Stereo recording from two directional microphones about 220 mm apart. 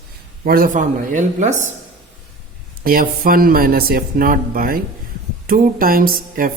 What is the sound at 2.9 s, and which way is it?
Speech, 40° right (ahead or behind).